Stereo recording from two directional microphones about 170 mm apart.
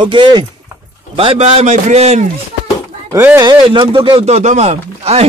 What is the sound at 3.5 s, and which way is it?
Speech, 30° right (ahead or behind).